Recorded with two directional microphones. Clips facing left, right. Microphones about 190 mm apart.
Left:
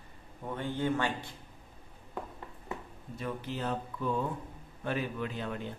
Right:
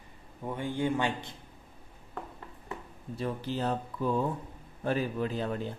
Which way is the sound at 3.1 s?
35° right (ahead or behind).